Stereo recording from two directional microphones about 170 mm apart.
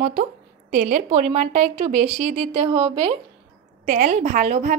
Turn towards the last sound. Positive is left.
turn(degrees=-45)  # may be behind; listen again after turning